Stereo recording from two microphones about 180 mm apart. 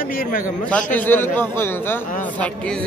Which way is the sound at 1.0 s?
10° left (ahead or behind).